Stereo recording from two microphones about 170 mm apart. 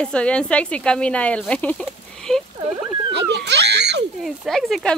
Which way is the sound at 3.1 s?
90° right.